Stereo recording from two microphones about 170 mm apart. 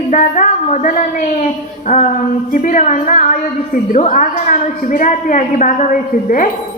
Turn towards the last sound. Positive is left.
turn(degrees=50)  # may be behind; listen again after turning